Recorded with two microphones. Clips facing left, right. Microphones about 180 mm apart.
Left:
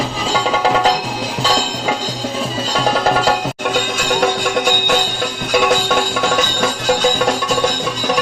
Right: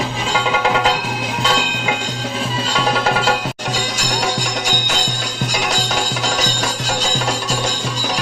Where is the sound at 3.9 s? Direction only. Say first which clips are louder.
Left 5 dB; 55° left (ahead or behind).